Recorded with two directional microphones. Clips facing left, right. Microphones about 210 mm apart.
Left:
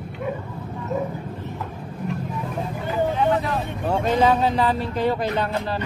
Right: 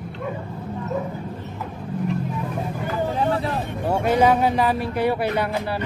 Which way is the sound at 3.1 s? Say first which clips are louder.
Even; 35° right (ahead or behind).